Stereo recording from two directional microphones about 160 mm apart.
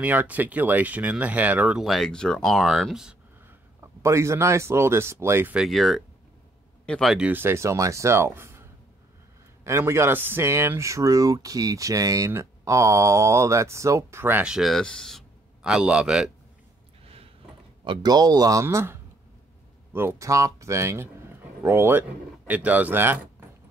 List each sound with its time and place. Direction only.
0.0 s speech: 10° right (ahead or behind)
9.7 s speech: 15° right (ahead or behind)
17.0 s a sound: 40° right (ahead or behind)
17.8 s speech: 25° right (ahead or behind)